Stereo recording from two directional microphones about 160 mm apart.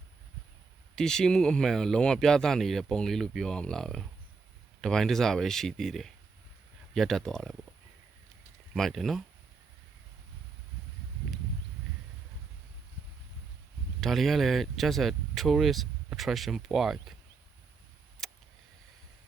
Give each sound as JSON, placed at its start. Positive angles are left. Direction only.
{"t": 0.9, "sound": "speech", "side_deg": 5}
{"t": 8.7, "sound": "speech", "side_deg": 0}
{"t": 14.0, "sound": "speech", "side_deg": 0}
{"t": 18.2, "sound": "a sound", "side_deg": 0}